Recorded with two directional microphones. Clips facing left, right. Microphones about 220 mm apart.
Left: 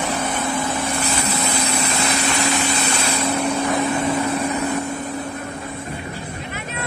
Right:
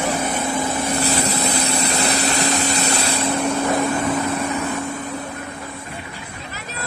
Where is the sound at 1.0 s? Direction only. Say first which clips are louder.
Right 2 dB; 35° right (ahead or behind).